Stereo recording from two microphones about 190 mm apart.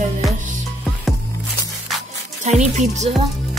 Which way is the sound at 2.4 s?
35° right (ahead or behind).